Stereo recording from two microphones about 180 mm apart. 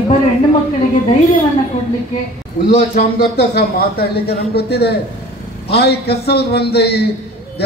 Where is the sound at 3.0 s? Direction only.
60° left (ahead or behind).